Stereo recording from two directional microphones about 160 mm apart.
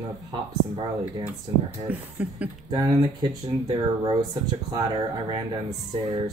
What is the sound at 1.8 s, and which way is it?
Speech, 10° right (ahead or behind).